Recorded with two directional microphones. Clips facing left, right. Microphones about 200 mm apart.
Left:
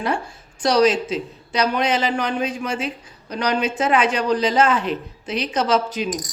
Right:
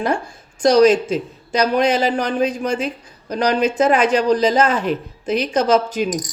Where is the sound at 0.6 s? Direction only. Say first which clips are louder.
Right 5 dB; 45° right (ahead or behind).